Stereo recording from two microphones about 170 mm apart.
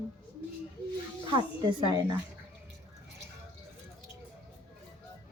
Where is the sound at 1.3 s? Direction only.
25° right (ahead or behind).